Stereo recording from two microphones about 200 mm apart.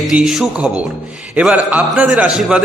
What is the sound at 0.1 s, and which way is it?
A man's voice, 5° right (ahead or behind).